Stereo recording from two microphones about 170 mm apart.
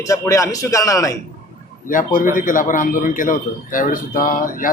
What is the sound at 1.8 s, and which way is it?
A man's voice, 50° left (ahead or behind).